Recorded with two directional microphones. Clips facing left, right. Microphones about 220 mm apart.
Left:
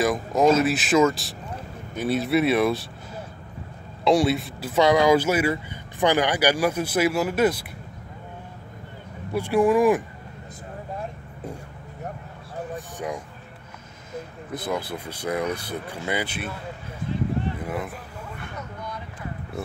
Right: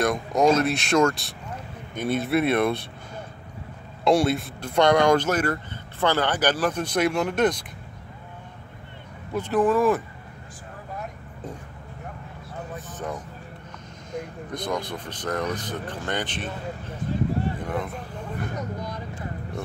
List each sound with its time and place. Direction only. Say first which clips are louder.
0.0 s speech: left 1 dB; centre (ahead or behind)
4.0 s speech: left 1 dB; centre (ahead or behind)
9.3 s speech: left 2 dB; 10° left (ahead or behind)
12.7 s a sound: left 1 dB; 10° left (ahead or behind)
14.1 s speech: right 1 dB; 5° left (ahead or behind)
17.6 s speech: right 1 dB; 5° left (ahead or behind)
18.3 s vehicle: right 8 dB; 40° right (ahead or behind)